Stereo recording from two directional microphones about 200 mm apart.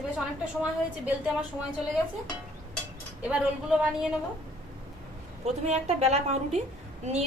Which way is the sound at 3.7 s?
5° right (ahead or behind).